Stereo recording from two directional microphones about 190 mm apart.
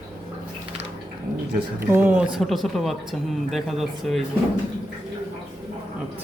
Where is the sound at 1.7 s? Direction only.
10° right (ahead or behind).